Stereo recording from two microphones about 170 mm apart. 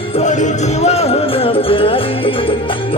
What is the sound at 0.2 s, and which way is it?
Music, 45° left (ahead or behind).